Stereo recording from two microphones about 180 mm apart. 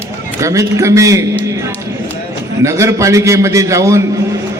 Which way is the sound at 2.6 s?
15° right (ahead or behind).